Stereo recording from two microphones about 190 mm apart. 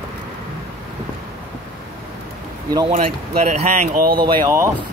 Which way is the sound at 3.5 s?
35° right (ahead or behind).